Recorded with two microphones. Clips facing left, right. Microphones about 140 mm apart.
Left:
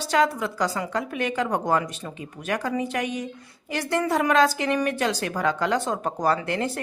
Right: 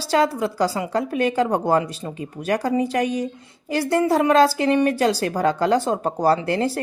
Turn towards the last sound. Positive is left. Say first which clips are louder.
# right 5 dB
turn(degrees=-35)  # may be behind; listen again after turning